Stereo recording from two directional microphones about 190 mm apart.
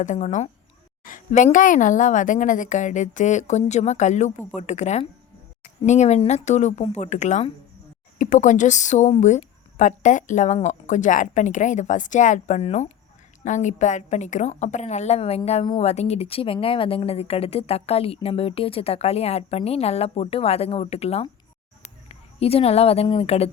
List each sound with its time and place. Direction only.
0.0 s speech: 40° left (ahead or behind)